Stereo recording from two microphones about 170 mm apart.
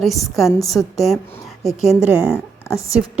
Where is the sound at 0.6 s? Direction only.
20° left (ahead or behind).